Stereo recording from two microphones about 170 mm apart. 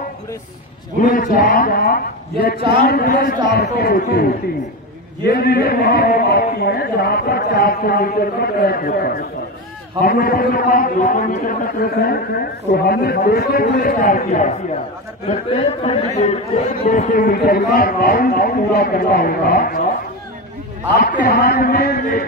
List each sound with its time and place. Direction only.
1.0 s speech: 55° left (ahead or behind)
15.2 s speech: 40° left (ahead or behind); by 19.8 s 60° left (ahead or behind)
20.9 s speech: 65° left (ahead or behind)